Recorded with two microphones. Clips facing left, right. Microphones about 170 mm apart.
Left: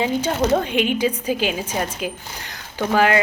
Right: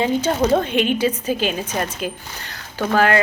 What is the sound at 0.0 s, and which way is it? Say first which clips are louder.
Speech: right 2 dB; 10° left (ahead or behind).